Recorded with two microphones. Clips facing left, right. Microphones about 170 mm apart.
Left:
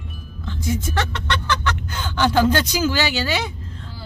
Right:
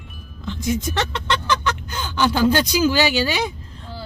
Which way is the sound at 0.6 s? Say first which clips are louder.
Right 1 dB; 20° right (ahead or behind).